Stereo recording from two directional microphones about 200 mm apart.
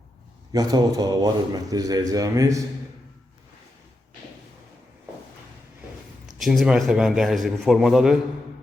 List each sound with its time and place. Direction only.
0.5 s a man's voice: 20° right (ahead or behind)
6.4 s a man's voice: centre (ahead or behind)